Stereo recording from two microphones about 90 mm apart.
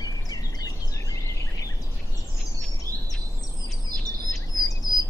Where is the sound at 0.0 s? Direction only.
45° left (ahead or behind).